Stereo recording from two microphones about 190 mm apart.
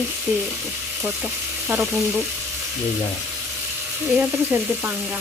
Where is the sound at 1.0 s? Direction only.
5° right (ahead or behind).